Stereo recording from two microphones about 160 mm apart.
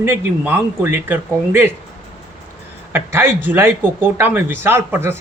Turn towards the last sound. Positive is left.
turn(degrees=-15)  # may be behind; listen again after turning